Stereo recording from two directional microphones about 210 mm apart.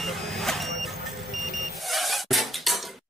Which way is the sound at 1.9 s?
Centre (ahead or behind).